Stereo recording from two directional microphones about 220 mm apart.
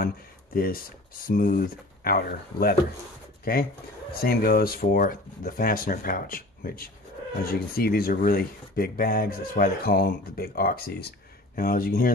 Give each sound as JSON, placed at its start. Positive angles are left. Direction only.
{"t": 0.6, "sound": "speech", "side_deg": 40}
{"t": 4.2, "sound": "speech", "side_deg": 45}